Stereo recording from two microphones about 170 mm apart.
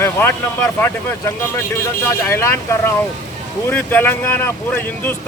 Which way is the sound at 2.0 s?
15° left (ahead or behind).